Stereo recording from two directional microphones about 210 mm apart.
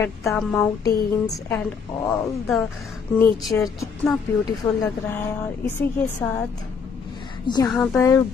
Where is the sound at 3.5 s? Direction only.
10° left (ahead or behind).